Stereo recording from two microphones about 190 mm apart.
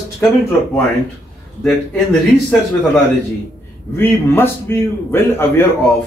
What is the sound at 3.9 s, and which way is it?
A man's voice, 10° left (ahead or behind).